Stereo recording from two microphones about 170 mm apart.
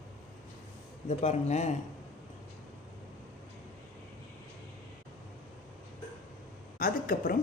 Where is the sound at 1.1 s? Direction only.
40° left (ahead or behind).